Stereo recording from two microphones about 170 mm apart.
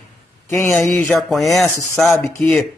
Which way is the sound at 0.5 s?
15° left (ahead or behind).